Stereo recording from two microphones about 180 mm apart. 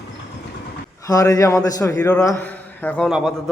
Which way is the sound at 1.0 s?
20° left (ahead or behind).